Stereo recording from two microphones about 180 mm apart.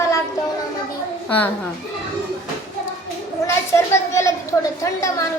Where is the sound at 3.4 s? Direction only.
15° left (ahead or behind).